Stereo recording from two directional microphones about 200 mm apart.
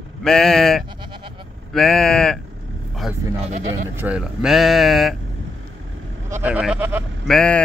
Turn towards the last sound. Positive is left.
turn(degrees=5)  # may be behind; listen again after turning